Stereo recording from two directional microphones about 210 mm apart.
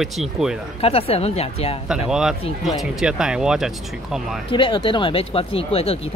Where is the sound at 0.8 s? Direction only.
30° left (ahead or behind).